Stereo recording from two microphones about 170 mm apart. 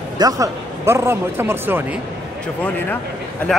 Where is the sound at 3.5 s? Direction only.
5° left (ahead or behind).